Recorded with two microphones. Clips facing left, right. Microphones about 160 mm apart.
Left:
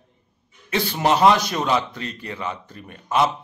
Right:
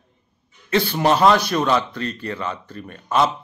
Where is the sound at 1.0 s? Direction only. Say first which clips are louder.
Even; 15° left (ahead or behind).